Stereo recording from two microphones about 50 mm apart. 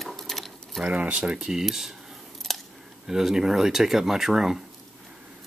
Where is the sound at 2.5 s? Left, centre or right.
Centre.